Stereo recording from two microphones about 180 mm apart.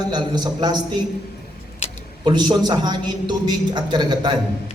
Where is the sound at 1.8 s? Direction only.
35° left (ahead or behind).